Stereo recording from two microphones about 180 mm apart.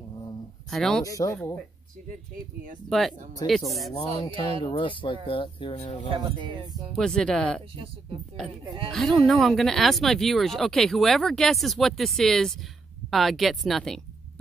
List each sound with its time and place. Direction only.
0.7 s speech: centre (ahead or behind)
1.0 s speech: 20° left (ahead or behind)
2.9 s speech: centre (ahead or behind)
3.9 s speech: 25° left (ahead or behind)
6.0 s speech: 25° right (ahead or behind)
7.0 s speech: 5° left (ahead or behind)
7.7 s speech: 30° right (ahead or behind)
8.9 s speech: centre (ahead or behind)